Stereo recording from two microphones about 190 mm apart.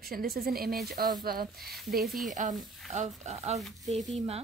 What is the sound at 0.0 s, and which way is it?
A woman's voice, 50° right (ahead or behind).